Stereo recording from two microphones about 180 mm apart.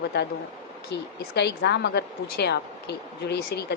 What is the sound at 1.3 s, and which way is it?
A woman's voice, 65° left (ahead or behind).